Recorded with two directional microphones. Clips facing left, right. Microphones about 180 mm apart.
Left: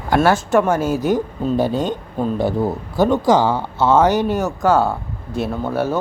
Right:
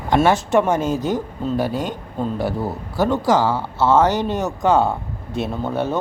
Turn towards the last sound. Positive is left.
turn(degrees=5)  # may be behind; listen again after turning